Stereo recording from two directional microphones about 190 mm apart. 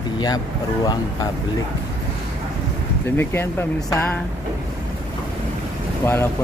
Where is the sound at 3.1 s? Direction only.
10° left (ahead or behind).